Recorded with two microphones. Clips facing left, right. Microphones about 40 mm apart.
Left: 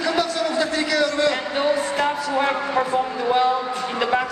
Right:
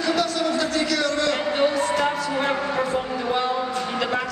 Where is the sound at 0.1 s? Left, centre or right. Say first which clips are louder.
Right 1 dB; centre.